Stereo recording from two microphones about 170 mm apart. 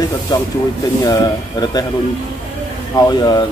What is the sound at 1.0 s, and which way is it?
Speech, 20° left (ahead or behind).